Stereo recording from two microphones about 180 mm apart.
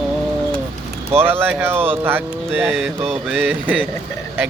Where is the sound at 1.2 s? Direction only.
10° right (ahead or behind).